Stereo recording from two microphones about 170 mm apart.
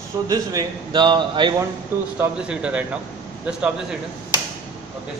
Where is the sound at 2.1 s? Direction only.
5° right (ahead or behind).